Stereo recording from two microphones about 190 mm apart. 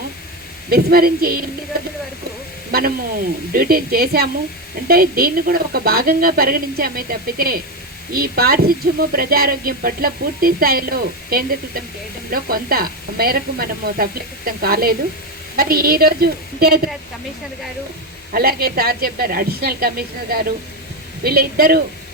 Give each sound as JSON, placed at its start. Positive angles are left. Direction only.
{"t": 0.7, "sound": "a woman's voice", "side_deg": -50}
{"t": 2.7, "sound": "a woman's voice", "side_deg": -50}
{"t": 18.3, "sound": "a woman's voice", "side_deg": -50}